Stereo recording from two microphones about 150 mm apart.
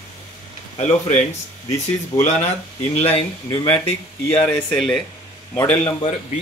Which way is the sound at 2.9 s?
40° left (ahead or behind).